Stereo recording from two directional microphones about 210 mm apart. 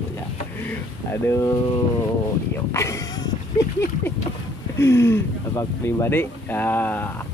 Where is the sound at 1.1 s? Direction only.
10° left (ahead or behind).